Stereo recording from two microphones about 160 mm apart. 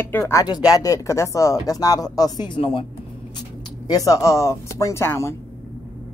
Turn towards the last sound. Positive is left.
turn(degrees=15)  # may be behind; listen again after turning